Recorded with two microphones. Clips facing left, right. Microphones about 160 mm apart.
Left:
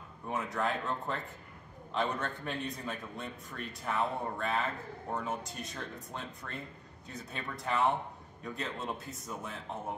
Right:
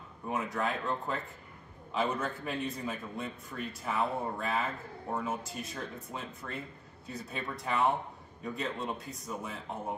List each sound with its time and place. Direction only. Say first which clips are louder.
0.3 s a man's voice: right 1 dB; centre (ahead or behind)